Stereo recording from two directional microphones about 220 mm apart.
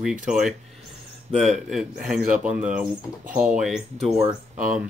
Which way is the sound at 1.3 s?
Centre (ahead or behind).